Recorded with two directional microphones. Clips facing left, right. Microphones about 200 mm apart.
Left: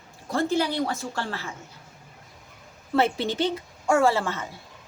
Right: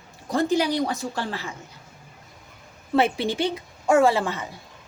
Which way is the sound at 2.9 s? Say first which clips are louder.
Right 2 dB; 15° right (ahead or behind).